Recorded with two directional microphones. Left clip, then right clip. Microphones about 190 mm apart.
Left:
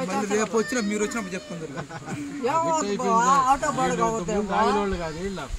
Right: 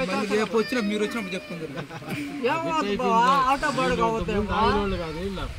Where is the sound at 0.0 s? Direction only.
5° left (ahead or behind).